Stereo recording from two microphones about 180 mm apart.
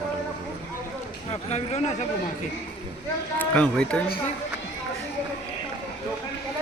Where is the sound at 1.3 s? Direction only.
40° left (ahead or behind).